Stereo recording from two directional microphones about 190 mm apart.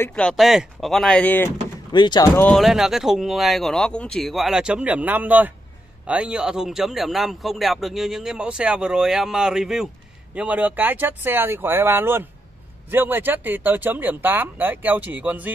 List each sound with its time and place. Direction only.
0.0 s speech: 5° left (ahead or behind)
1.9 s speech: 20° left (ahead or behind)
2.5 s speech: centre (ahead or behind)